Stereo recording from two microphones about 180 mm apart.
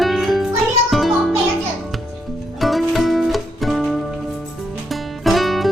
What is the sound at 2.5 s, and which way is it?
Music, centre (ahead or behind).